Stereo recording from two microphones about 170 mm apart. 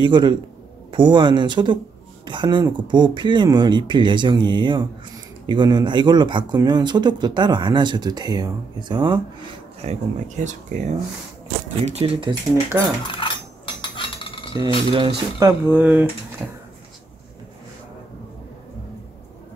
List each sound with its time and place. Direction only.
0.0 s speech: 25° right (ahead or behind)
9.8 s speech: 45° right (ahead or behind)
11.8 s speech: 35° right (ahead or behind)
13.0 s cutlery: 30° left (ahead or behind)
13.7 s a sound: 30° left (ahead or behind)
14.5 s speech: 20° right (ahead or behind)
14.9 s speech: 30° right (ahead or behind)
15.4 s speech: 10° right (ahead or behind)